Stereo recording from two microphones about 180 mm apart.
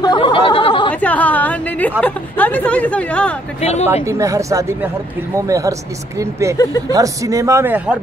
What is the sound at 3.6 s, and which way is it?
Speech, 35° left (ahead or behind).